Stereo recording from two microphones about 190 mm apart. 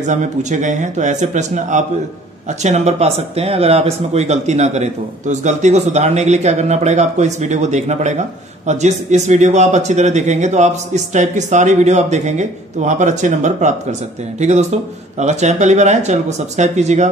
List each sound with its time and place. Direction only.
0.0 s speech: 40° right (ahead or behind)